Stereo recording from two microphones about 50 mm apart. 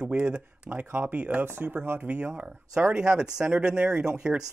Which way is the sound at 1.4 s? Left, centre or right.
Right.